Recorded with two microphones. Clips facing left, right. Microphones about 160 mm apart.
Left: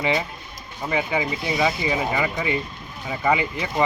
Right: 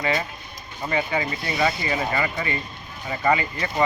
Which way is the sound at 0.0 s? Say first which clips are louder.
Left 2 dB; 10° left (ahead or behind).